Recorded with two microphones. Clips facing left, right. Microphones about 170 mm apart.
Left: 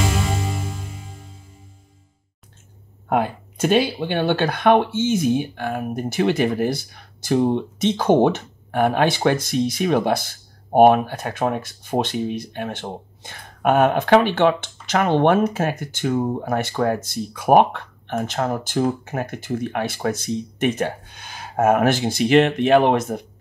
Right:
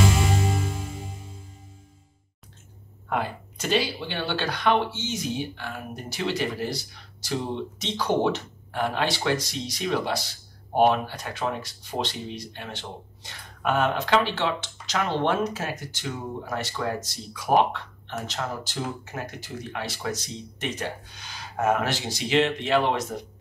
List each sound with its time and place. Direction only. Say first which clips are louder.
3.1 s speech: left 7 dB; 50° left (ahead or behind)